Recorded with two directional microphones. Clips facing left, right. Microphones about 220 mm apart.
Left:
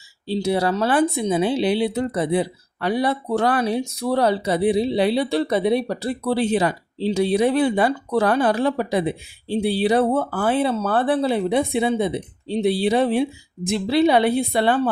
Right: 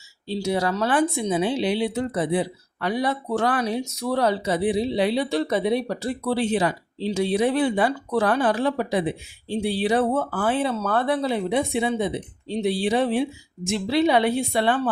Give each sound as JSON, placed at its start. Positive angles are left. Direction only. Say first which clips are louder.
{"t": 0.3, "sound": "speech", "louder": "left 3 dB", "side_deg": 30}